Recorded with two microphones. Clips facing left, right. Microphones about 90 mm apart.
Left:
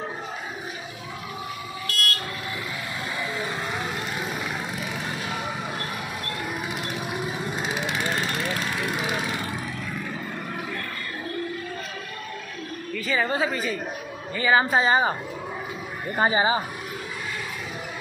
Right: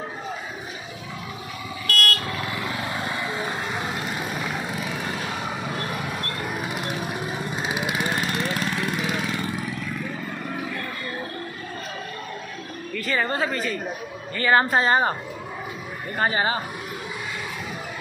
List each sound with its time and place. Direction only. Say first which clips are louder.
1.9 s vehicle: right 6 dB; 60° right (ahead or behind)
7.6 s vehicle: right 2 dB; 10° right (ahead or behind)
12.9 s a woman's voice: even; 5° left (ahead or behind)
16.2 s speech: left 2 dB; 15° left (ahead or behind)